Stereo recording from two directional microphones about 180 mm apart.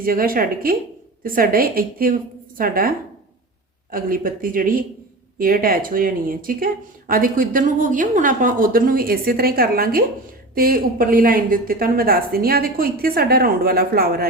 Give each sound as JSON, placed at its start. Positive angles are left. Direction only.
{"t": 0.0, "sound": "a woman's voice", "side_deg": -55}
{"t": 3.9, "sound": "a woman's voice", "side_deg": -50}